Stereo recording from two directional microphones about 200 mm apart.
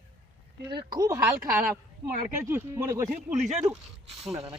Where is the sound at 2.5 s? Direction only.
10° right (ahead or behind).